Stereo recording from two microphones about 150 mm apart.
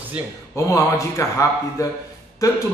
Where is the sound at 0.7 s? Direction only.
20° left (ahead or behind).